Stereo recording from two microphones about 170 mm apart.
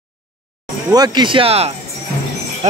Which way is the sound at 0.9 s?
25° right (ahead or behind).